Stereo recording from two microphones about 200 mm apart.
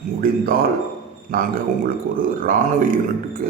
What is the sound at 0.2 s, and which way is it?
Speech, 45° right (ahead or behind).